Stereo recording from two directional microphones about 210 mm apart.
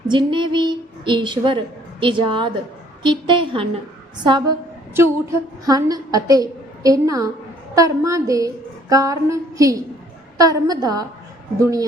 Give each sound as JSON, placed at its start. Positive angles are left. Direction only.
{"t": 0.1, "sound": "a woman's voice", "side_deg": -20}